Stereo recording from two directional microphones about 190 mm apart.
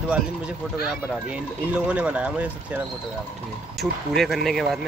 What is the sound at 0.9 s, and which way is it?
Speech, 5° right (ahead or behind).